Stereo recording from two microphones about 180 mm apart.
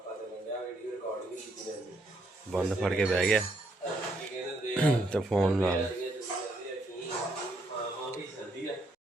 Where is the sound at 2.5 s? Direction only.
Centre (ahead or behind).